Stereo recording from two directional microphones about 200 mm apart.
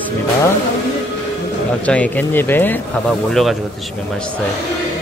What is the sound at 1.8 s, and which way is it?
Speech, 5° left (ahead or behind).